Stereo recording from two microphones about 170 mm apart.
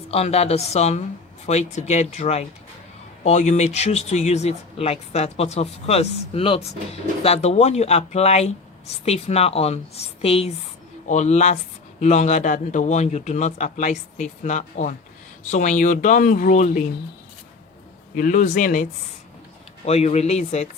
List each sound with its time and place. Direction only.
0.1 s speech: 35° left (ahead or behind)
18.2 s speech: 50° left (ahead or behind)
19.8 s speech: 40° left (ahead or behind)